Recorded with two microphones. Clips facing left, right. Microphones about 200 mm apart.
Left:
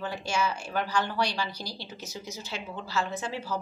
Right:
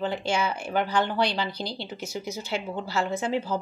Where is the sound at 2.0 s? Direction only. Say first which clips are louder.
Right 8 dB; 60° right (ahead or behind).